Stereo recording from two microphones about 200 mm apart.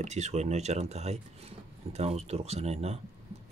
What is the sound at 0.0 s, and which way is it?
Speech, 35° right (ahead or behind).